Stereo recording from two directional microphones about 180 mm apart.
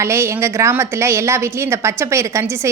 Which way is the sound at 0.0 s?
15° right (ahead or behind).